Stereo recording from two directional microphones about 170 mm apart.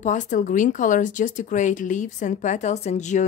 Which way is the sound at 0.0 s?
45° left (ahead or behind).